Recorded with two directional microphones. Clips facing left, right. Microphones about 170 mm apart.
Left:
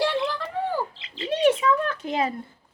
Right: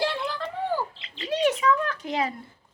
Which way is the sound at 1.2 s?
25° left (ahead or behind).